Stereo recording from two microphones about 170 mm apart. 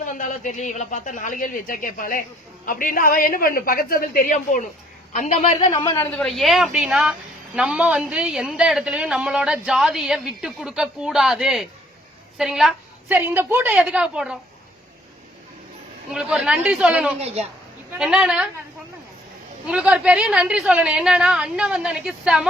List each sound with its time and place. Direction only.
0.0 s a woman's voice: 50° left (ahead or behind)
5.7 s a man's voice: 20° left (ahead or behind)
6.1 s a woman's voice: 5° left (ahead or behind)
16.1 s a woman's voice: 5° right (ahead or behind)
19.6 s a woman's voice: 5° right (ahead or behind)